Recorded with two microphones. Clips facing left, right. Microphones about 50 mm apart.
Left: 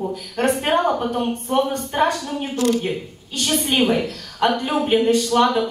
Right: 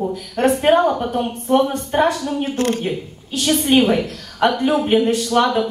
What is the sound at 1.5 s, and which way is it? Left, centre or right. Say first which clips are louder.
Speech: right 4 dB; right.